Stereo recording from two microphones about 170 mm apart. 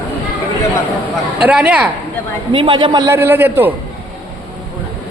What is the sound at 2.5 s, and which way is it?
Speech, 30° right (ahead or behind).